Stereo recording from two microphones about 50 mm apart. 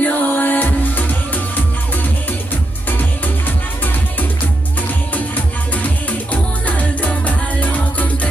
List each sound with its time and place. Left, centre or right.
0.0 s music: left
3.0 s music: left
5.1 s music: left